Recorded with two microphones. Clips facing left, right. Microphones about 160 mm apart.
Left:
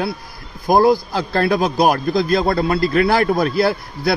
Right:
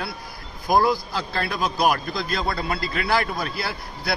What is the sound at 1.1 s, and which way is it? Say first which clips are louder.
A man's voice: left 10 dB; 50° left (ahead or behind).